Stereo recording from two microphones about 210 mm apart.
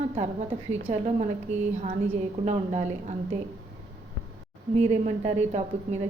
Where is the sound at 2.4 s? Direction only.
35° right (ahead or behind).